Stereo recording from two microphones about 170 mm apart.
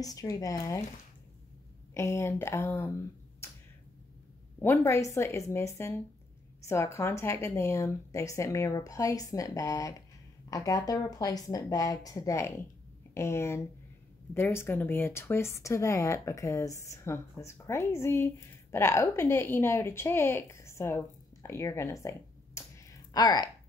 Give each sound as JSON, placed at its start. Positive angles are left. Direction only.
{"t": 0.0, "sound": "a woman's voice", "side_deg": 20}
{"t": 2.0, "sound": "speech", "side_deg": 15}
{"t": 4.6, "sound": "a woman's voice", "side_deg": 15}